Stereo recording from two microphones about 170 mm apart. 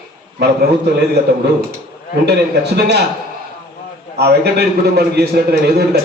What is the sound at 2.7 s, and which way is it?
Speech, 75° right (ahead or behind).